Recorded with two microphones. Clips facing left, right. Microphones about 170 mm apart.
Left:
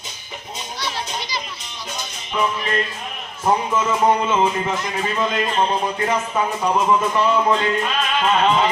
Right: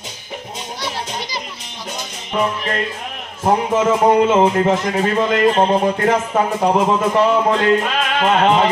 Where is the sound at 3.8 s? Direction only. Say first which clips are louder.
Right 5 dB; 70° right (ahead or behind).